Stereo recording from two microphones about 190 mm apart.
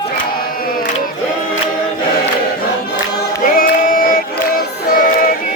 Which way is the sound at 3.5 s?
50° left (ahead or behind).